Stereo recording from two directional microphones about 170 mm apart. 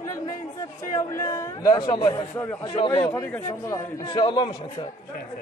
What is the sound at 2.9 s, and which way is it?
A man's voice, 15° left (ahead or behind).